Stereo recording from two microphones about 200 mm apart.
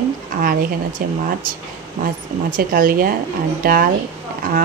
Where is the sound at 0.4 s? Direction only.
45° right (ahead or behind).